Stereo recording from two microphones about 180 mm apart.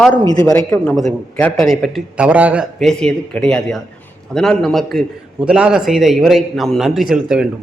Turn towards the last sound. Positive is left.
turn(degrees=-5)  # may be behind; listen again after turning